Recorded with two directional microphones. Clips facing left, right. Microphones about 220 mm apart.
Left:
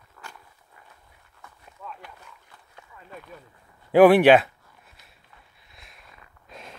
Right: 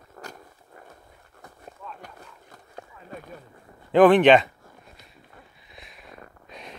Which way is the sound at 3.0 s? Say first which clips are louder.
Right 2 dB; 40° right (ahead or behind).